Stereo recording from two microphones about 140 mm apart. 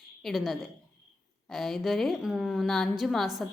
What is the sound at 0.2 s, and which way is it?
A woman's voice, centre (ahead or behind).